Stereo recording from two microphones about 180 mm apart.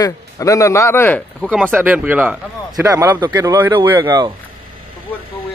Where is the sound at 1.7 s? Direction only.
10° right (ahead or behind).